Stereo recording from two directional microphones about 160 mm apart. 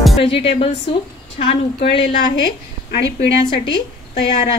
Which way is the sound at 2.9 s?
90° left.